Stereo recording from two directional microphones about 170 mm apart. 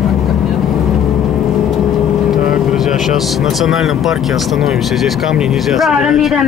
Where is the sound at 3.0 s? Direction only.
Centre (ahead or behind).